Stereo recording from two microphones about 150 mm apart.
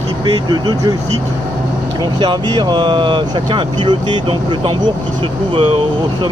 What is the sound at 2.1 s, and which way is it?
Speech, 30° right (ahead or behind).